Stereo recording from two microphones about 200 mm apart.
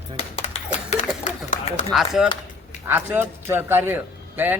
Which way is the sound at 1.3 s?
40° left (ahead or behind).